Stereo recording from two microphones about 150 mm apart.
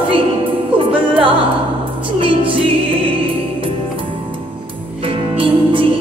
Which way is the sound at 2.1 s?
35° right (ahead or behind).